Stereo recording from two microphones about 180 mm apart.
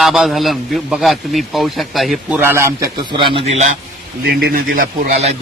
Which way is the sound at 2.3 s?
10° right (ahead or behind).